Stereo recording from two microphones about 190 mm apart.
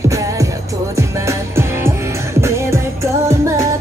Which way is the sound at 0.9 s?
15° right (ahead or behind).